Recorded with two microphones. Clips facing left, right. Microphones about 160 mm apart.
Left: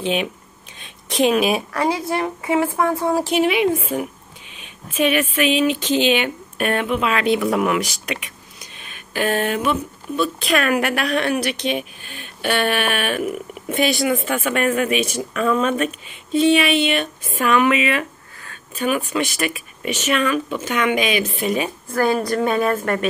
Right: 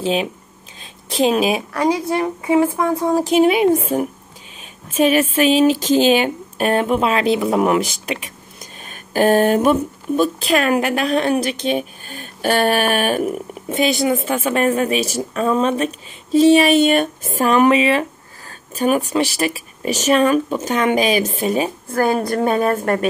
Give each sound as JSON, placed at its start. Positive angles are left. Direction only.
{"t": 0.0, "sound": "a woman's voice", "side_deg": -30}
{"t": 1.7, "sound": "a woman's voice", "side_deg": -15}
{"t": 3.4, "sound": "speech", "side_deg": -45}
{"t": 10.5, "sound": "speech", "side_deg": -30}
{"t": 13.7, "sound": "a woman's voice", "side_deg": -25}
{"t": 22.0, "sound": "speech", "side_deg": -45}